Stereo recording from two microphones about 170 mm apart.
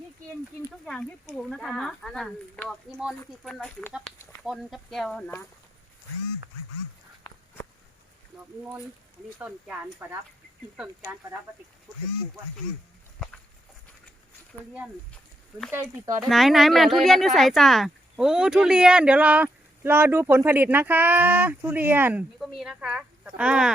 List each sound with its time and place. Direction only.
1.4 s speech: centre (ahead or behind)
10.0 s speech: 10° right (ahead or behind)
15.7 s speech: 15° right (ahead or behind)
16.3 s speech: centre (ahead or behind)
22.4 s speech: centre (ahead or behind)